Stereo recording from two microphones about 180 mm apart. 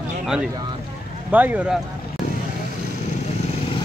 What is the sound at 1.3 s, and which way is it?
Speech, 10° right (ahead or behind).